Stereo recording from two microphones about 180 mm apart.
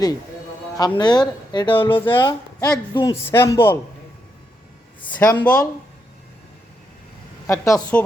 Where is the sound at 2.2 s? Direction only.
20° left (ahead or behind).